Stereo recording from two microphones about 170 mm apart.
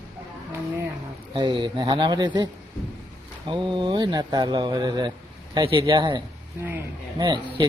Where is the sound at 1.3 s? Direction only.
25° right (ahead or behind).